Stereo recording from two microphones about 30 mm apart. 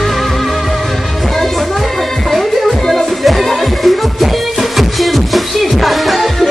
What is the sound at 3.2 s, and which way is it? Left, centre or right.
Music, centre.